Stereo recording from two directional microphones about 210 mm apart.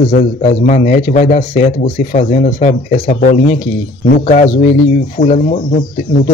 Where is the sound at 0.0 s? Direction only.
35° left (ahead or behind).